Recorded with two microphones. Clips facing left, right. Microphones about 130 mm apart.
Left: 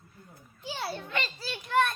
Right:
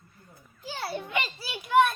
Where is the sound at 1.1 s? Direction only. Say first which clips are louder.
Right 2 dB; 10° right (ahead or behind).